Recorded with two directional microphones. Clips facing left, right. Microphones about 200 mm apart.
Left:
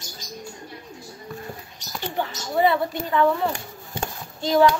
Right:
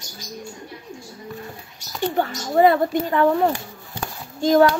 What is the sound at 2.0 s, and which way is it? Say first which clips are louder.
Speech: right 6 dB; 45° right (ahead or behind).